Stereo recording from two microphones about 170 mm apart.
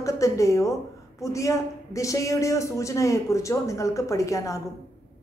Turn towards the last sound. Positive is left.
turn(degrees=20)  # may be behind; listen again after turning